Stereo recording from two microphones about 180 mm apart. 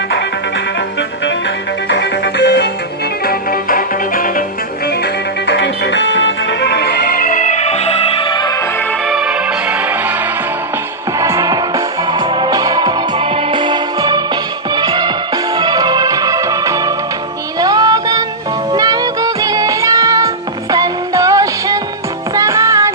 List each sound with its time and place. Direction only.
1.9 s music: 70° left (ahead or behind)
3.2 s music: 55° left (ahead or behind)
5.5 s music: 75° left (ahead or behind); by 8.5 s 25° left (ahead or behind)
9.0 s music: 5° right (ahead or behind)
11.2 s music: 15° right (ahead or behind)